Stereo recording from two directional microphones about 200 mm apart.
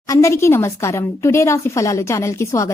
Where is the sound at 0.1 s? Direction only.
15° left (ahead or behind).